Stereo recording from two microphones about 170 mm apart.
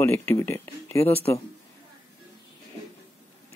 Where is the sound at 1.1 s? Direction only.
35° left (ahead or behind).